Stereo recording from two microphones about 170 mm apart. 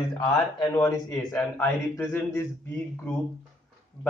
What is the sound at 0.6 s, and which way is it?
Speech, 20° left (ahead or behind).